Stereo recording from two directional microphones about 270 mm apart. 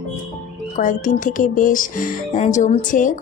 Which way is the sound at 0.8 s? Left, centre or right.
Left.